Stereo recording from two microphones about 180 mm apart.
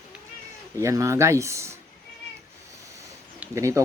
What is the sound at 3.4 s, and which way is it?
Speech, 15° right (ahead or behind).